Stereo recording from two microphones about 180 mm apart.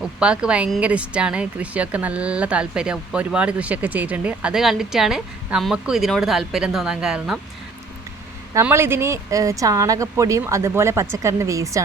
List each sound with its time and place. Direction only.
0.2 s a woman's voice: 5° right (ahead or behind)
8.5 s speech: 15° right (ahead or behind)